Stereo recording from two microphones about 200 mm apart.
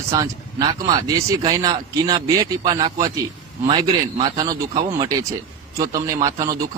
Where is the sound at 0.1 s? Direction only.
20° right (ahead or behind).